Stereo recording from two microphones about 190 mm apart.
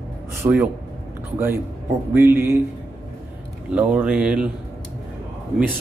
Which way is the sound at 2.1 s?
10° right (ahead or behind).